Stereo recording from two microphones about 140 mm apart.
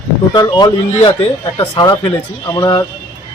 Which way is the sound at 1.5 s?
45° left (ahead or behind).